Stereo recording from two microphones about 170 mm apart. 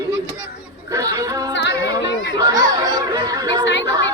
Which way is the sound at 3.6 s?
90° left.